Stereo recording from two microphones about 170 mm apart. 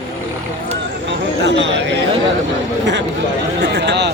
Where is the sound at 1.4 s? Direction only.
90° right.